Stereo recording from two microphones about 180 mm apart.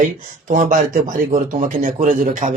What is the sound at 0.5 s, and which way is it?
A man's voice, 45° right (ahead or behind).